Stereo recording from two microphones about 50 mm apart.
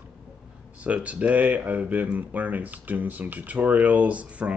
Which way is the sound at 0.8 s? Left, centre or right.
Right.